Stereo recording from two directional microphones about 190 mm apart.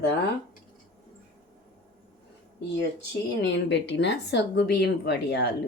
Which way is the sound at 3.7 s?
65° left (ahead or behind).